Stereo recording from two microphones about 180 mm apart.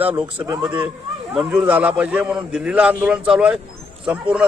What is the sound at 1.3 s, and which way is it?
A man's voice, 5° right (ahead or behind).